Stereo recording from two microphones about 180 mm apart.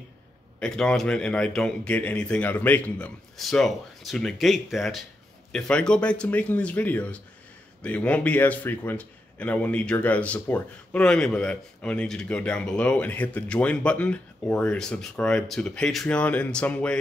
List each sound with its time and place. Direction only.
0.6 s a man's voice: 5° left (ahead or behind)